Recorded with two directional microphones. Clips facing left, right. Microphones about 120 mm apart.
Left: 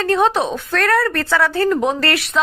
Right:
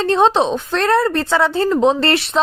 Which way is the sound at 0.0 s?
25° right (ahead or behind).